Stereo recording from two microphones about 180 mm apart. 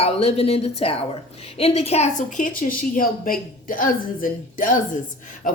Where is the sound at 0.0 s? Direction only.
35° left (ahead or behind).